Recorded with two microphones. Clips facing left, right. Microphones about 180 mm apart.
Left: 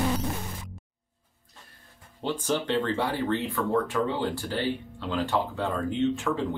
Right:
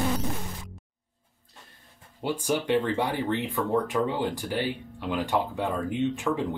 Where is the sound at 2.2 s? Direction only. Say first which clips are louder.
Right 1 dB; 10° right (ahead or behind).